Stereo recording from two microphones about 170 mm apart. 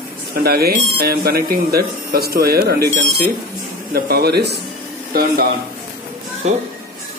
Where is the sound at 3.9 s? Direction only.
70° right (ahead or behind).